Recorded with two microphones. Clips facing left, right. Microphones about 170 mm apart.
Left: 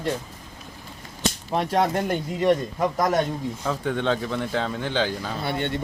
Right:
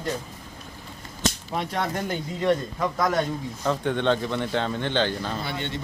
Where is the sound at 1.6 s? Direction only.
45° left (ahead or behind).